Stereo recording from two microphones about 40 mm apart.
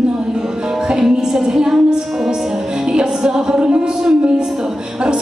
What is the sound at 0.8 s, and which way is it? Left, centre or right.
Music, centre.